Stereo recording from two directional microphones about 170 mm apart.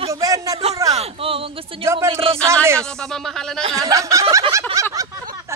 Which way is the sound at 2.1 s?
35° right (ahead or behind).